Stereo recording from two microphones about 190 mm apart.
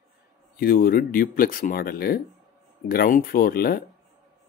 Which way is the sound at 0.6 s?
50° left (ahead or behind).